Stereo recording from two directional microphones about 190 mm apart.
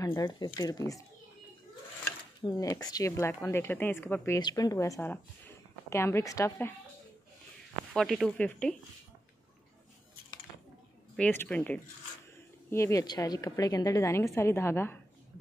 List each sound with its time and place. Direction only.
0.0 s speech: 20° left (ahead or behind)
2.4 s a woman's voice: 15° left (ahead or behind)
4.4 s a woman's voice: 20° left (ahead or behind)
7.9 s a woman's voice: centre (ahead or behind)
11.1 s a woman's voice: 10° left (ahead or behind)